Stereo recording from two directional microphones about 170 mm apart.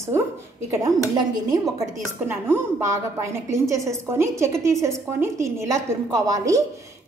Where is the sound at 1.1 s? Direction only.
25° right (ahead or behind).